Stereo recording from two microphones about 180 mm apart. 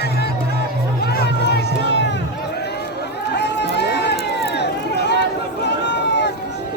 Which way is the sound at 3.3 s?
70° left (ahead or behind).